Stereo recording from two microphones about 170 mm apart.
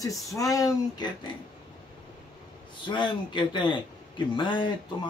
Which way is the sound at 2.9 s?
30° left (ahead or behind).